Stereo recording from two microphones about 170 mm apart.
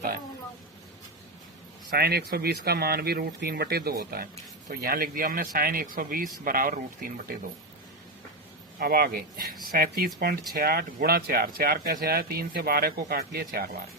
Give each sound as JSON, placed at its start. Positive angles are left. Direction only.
{"t": 1.9, "sound": "speech", "side_deg": -70}
{"t": 8.8, "sound": "speech", "side_deg": -60}